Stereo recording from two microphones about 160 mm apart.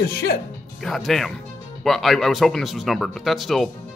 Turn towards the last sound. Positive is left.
turn(degrees=0)  # may be behind; listen again after turning